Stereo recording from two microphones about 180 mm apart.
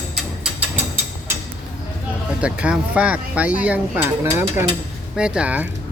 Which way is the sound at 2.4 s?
5° right (ahead or behind).